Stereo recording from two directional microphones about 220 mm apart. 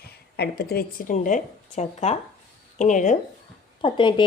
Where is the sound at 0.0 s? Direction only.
45° left (ahead or behind).